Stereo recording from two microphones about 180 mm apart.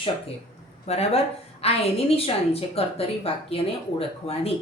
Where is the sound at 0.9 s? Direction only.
35° left (ahead or behind).